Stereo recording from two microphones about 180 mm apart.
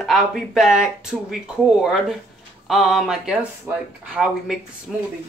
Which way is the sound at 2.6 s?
Centre (ahead or behind).